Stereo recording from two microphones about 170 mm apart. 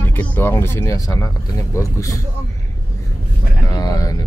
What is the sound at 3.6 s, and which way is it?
Music, 20° left (ahead or behind).